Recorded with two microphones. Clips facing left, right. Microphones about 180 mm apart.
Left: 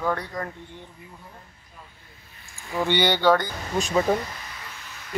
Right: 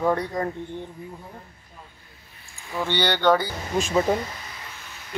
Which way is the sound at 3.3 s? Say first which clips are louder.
Even; 5° right (ahead or behind).